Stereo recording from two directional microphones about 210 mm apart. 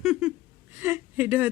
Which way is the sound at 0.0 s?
5° right (ahead or behind).